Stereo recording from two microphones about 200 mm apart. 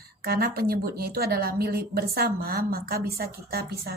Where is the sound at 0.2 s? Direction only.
50° right (ahead or behind).